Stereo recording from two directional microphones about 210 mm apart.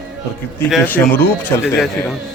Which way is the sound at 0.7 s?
10° left (ahead or behind).